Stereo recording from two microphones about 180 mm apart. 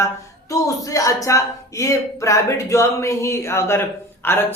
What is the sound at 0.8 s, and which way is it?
A man's voice, 20° left (ahead or behind).